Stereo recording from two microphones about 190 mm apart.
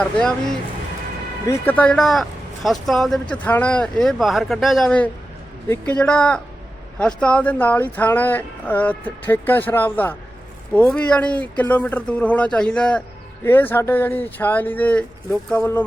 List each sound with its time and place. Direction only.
0.0 s speech: 5° left (ahead or behind)